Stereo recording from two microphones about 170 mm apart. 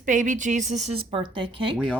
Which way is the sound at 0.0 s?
50° right (ahead or behind).